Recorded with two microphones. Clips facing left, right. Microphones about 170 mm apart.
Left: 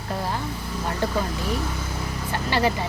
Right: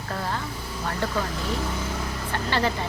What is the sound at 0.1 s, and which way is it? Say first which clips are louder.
Vehicle: left 2 dB; 15° left (ahead or behind).